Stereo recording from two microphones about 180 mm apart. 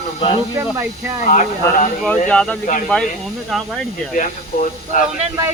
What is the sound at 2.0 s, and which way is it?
Speech, 5° left (ahead or behind).